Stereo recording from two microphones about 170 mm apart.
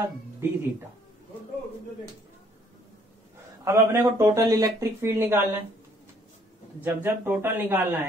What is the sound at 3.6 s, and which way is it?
Speech, 15° right (ahead or behind).